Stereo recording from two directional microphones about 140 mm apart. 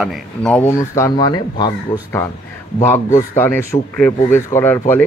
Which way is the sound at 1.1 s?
30° left (ahead or behind).